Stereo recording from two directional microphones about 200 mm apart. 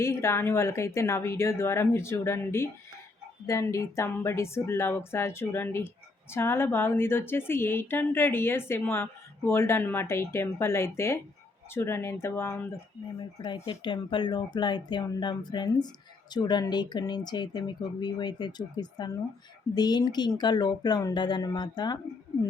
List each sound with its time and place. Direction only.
0.0 s speech: 15° left (ahead or behind)
13.4 s speech: 25° left (ahead or behind)